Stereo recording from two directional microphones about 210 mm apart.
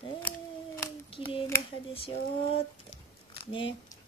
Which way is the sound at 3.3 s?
25° left (ahead or behind).